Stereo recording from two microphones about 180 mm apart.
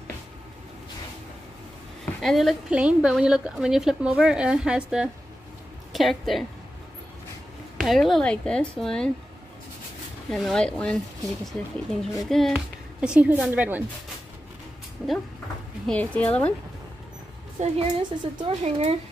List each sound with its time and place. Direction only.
2.2 s a woman's voice: centre (ahead or behind)
7.8 s a woman's voice: centre (ahead or behind)
10.3 s a woman's voice: centre (ahead or behind)
12.0 s a woman's voice: centre (ahead or behind)
15.9 s a woman's voice: 5° left (ahead or behind)
17.6 s speech: 30° right (ahead or behind)